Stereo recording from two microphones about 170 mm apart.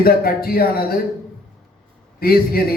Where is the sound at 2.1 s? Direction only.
65° left (ahead or behind).